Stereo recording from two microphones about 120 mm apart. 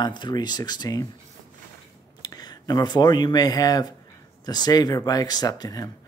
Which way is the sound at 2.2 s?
35° left (ahead or behind).